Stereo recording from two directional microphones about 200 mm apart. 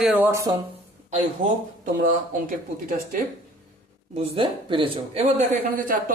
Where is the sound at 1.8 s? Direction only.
45° right (ahead or behind).